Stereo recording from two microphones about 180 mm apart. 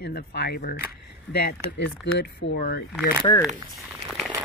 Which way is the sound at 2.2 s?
70° left (ahead or behind).